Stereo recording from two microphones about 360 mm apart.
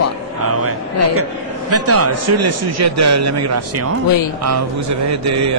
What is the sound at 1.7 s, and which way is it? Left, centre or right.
A man's voice, right.